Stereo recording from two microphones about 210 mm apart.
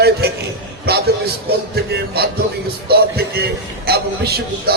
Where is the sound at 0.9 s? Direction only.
50° right (ahead or behind).